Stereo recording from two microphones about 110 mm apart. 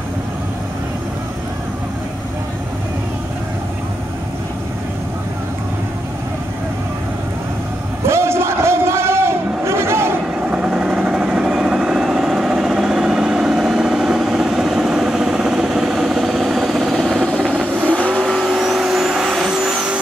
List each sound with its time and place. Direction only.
8.1 s a sound: 25° right (ahead or behind)
10.5 s vehicle: 10° right (ahead or behind)
17.9 s vehicle: 5° left (ahead or behind)